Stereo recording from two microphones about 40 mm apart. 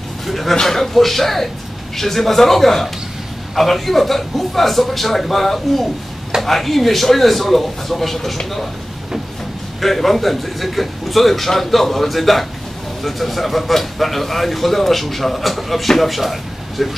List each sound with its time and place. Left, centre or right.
0.3 s a man's voice: centre
9.8 s speech: centre